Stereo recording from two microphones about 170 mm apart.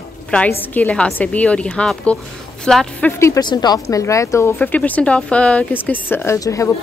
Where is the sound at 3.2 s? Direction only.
20° left (ahead or behind).